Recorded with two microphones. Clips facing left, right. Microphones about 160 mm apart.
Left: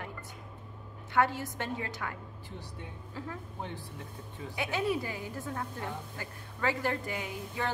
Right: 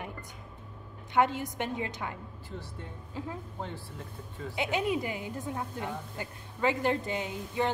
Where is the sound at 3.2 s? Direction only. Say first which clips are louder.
Right 3 dB; 20° right (ahead or behind).